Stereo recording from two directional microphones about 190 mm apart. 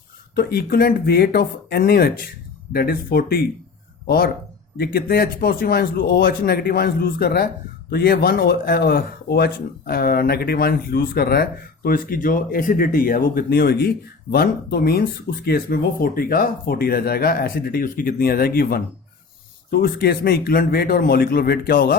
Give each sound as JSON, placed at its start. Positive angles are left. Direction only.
{"t": 0.3, "sound": "speech", "side_deg": 55}